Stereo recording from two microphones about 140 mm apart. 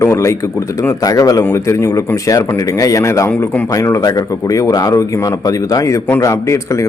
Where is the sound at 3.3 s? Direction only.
10° left (ahead or behind).